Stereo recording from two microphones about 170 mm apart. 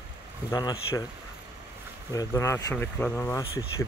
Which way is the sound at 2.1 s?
15° left (ahead or behind).